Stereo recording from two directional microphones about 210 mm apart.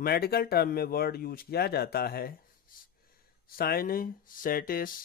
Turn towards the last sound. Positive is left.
turn(degrees=40)  # may be behind; listen again after turning